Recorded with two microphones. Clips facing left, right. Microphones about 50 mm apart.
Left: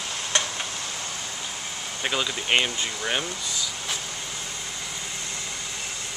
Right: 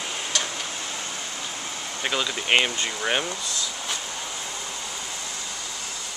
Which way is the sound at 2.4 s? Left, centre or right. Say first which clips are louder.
Right 3 dB; centre.